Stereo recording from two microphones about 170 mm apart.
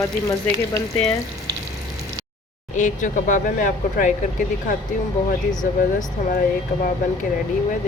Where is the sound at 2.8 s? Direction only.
45° left (ahead or behind).